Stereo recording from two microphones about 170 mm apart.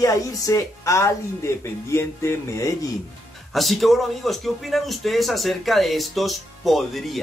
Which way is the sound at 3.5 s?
Centre (ahead or behind).